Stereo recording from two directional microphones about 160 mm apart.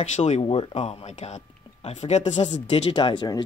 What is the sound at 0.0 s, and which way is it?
Speech, 45° left (ahead or behind).